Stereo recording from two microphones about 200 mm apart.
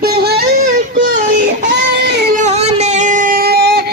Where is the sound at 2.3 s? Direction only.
35° right (ahead or behind); by 3.9 s 55° right (ahead or behind).